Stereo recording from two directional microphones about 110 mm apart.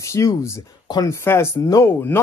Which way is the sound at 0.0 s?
30° left (ahead or behind).